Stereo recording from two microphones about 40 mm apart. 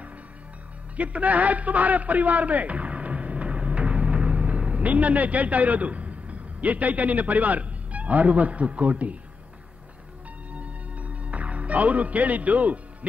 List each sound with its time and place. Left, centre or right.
0.9 s a man's voice: right
10.5 s music: right